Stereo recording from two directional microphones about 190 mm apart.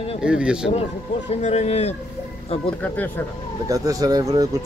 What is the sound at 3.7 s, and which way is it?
Speech, 20° right (ahead or behind).